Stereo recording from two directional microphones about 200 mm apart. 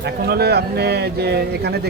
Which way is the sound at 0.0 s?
50° right (ahead or behind).